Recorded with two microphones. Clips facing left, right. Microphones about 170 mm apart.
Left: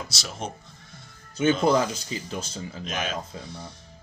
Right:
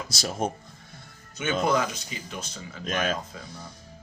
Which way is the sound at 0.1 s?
50° right (ahead or behind).